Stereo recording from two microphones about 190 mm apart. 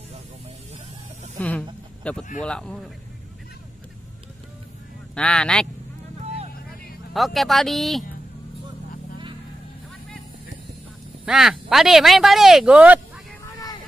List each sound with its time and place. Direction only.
1.4 s chicken: 10° left (ahead or behind)
2.0 s speech: 5° left (ahead or behind)
5.1 s speech: 5° left (ahead or behind)
6.2 s vehicle: 35° right (ahead or behind)
7.2 s speech: centre (ahead or behind)
11.2 s speech: centre (ahead or behind)